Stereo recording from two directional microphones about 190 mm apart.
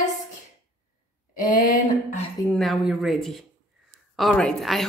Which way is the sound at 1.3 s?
45° left (ahead or behind).